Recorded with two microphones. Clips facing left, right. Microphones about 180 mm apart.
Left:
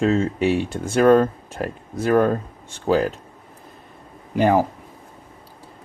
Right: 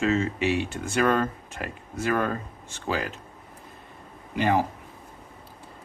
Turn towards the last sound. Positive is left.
turn(degrees=45)  # may be behind; listen again after turning